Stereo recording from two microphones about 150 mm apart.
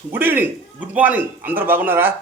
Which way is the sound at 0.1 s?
15° right (ahead or behind).